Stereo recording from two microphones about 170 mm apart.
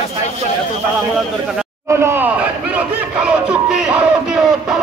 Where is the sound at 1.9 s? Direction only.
15° right (ahead or behind).